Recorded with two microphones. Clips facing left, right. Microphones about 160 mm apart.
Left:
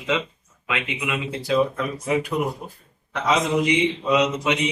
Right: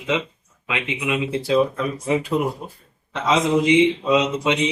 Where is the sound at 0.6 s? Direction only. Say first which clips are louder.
Right 2 dB; 20° right (ahead or behind).